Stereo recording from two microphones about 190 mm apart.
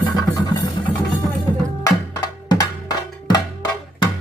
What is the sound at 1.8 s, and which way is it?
Music, 20° left (ahead or behind).